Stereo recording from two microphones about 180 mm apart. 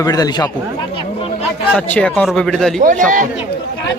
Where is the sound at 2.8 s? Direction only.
45° right (ahead or behind).